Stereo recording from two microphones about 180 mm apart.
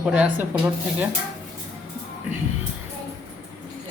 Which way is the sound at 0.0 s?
5° right (ahead or behind).